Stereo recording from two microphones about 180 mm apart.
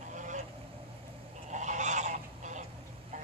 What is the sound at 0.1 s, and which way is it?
Vehicle, 45° right (ahead or behind).